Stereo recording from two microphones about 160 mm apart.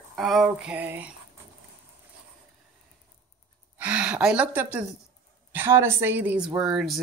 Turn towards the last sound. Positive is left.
turn(degrees=-5)  # may be behind; listen again after turning